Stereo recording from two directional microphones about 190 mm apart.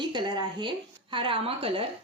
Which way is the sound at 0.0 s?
25° right (ahead or behind).